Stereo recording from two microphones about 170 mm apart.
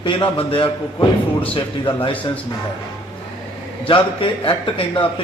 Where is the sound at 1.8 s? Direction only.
30° left (ahead or behind).